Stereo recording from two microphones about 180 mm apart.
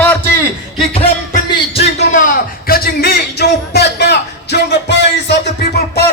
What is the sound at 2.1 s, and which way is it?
A man's voice, 50° left (ahead or behind).